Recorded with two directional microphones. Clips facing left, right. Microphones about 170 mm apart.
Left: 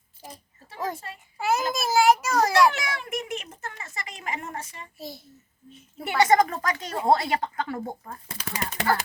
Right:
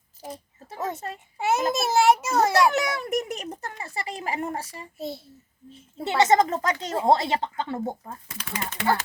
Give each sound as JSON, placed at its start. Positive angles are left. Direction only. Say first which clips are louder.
{"t": 0.8, "sound": "speech", "louder": "right 1 dB", "side_deg": -25}
{"t": 2.7, "sound": "speech", "louder": "right 7 dB", "side_deg": -40}